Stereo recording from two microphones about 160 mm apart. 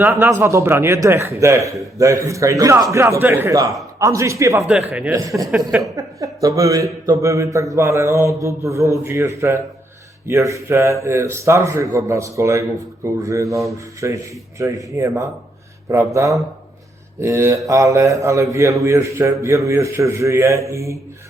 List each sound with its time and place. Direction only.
0.0 s a man's voice: 15° right (ahead or behind)
4.9 s a man's voice: 10° right (ahead or behind)
5.1 s a man's voice: 20° right (ahead or behind)
5.5 s speech: 5° right (ahead or behind)
6.0 s a woman's voice: 20° right (ahead or behind)